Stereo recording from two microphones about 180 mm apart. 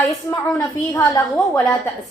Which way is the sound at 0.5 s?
15° left (ahead or behind).